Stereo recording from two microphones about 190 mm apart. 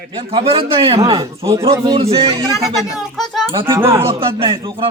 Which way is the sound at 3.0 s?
Centre (ahead or behind).